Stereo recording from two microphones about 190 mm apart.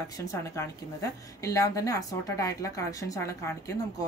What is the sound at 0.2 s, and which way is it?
A woman's voice, 15° left (ahead or behind).